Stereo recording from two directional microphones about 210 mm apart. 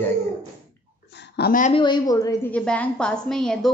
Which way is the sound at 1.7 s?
20° left (ahead or behind).